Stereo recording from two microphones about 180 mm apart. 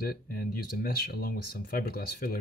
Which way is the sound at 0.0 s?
55° left (ahead or behind).